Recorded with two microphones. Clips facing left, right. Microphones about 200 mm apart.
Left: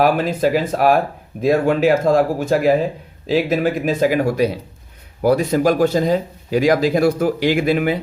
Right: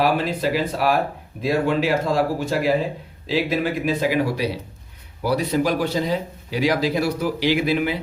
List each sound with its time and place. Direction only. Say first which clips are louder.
0.0 s speech: left 4 dB; 50° left (ahead or behind)